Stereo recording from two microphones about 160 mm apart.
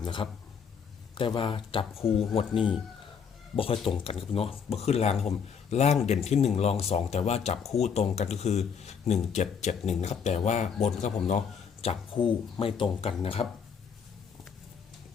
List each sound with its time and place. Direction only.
0.0 s speech: 30° left (ahead or behind)